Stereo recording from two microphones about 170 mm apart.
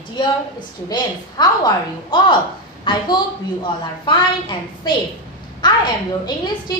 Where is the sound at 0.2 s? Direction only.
25° left (ahead or behind).